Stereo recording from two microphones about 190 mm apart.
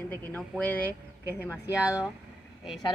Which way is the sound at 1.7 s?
5° right (ahead or behind).